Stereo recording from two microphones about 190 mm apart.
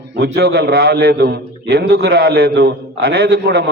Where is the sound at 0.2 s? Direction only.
60° right (ahead or behind).